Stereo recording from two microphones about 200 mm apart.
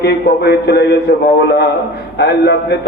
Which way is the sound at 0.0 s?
55° left (ahead or behind).